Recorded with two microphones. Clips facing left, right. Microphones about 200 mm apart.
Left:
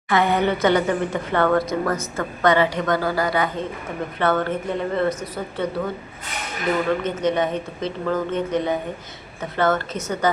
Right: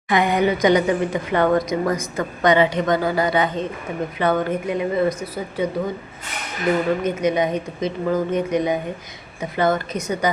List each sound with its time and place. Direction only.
0.1 s speech: 15° right (ahead or behind)
7.0 s speech: 10° right (ahead or behind)